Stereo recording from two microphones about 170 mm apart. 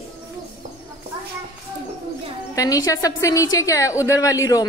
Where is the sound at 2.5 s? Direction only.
20° left (ahead or behind).